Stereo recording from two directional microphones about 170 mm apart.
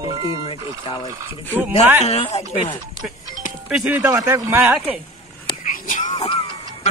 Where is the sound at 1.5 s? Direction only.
10° right (ahead or behind).